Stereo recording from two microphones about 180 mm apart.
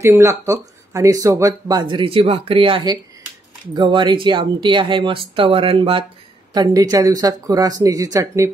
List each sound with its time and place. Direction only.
0.0 s speech: 15° right (ahead or behind)